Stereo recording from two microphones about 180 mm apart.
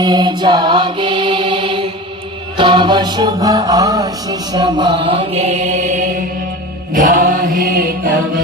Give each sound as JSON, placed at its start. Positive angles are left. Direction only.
{"t": 0.0, "sound": "mantra", "side_deg": -25}
{"t": 2.6, "sound": "chant", "side_deg": -25}
{"t": 6.9, "sound": "mantra", "side_deg": -50}